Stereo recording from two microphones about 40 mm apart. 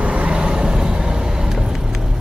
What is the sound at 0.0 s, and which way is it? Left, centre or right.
Vehicle, right.